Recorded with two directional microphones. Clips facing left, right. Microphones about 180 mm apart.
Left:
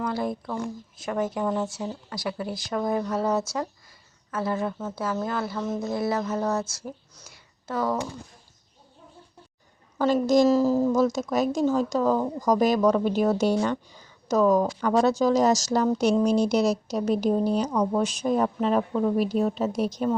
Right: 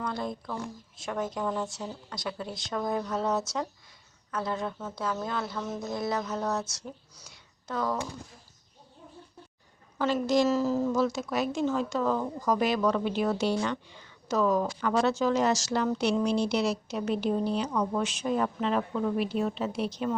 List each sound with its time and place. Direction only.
0.0 s speech: 5° left (ahead or behind)
10.0 s a woman's voice: 40° left (ahead or behind)